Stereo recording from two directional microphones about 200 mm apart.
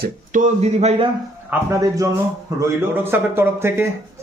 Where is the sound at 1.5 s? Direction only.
15° right (ahead or behind).